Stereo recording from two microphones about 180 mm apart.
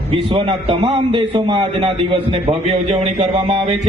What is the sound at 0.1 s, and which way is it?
A man's voice, 30° right (ahead or behind).